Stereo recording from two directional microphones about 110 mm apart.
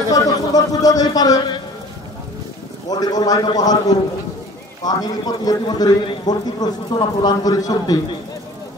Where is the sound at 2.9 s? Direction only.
35° left (ahead or behind).